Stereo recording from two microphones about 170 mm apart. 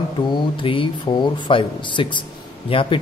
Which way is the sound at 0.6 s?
30° left (ahead or behind).